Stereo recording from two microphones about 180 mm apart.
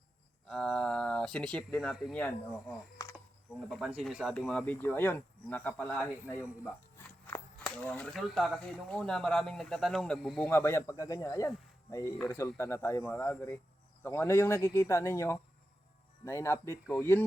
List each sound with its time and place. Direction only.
0.4 s speech: 5° left (ahead or behind)
2.2 s speech: 10° left (ahead or behind)
10.5 s a man's voice: 15° left (ahead or behind)